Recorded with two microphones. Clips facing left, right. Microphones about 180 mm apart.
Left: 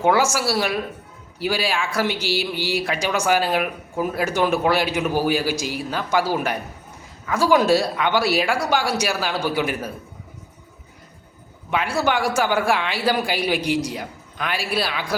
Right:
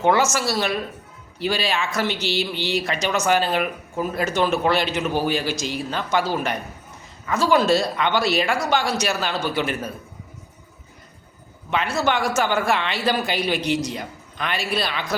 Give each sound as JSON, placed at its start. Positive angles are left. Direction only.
{"t": 0.0, "sound": "speech", "side_deg": 10}
{"t": 11.7, "sound": "speech", "side_deg": 10}